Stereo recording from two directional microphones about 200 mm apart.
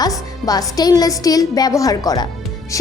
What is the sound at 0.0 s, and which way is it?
A woman's voice, 20° left (ahead or behind).